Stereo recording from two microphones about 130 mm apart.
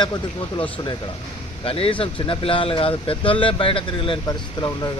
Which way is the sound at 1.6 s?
45° left (ahead or behind).